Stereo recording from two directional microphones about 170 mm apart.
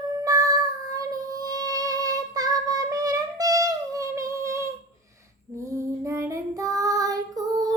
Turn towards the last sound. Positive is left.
turn(degrees=-20)  # may be behind; listen again after turning